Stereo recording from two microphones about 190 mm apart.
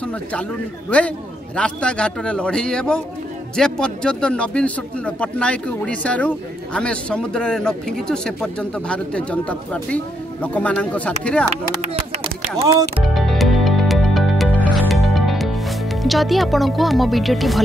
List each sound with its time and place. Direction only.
0.0 s a man's voice: 5° left (ahead or behind)
11.8 s a sound: 35° right (ahead or behind)
13.1 s music: centre (ahead or behind)
16.0 s speech: centre (ahead or behind)